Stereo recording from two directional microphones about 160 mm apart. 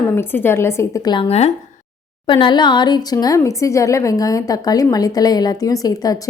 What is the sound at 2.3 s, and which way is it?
Speech, 30° left (ahead or behind).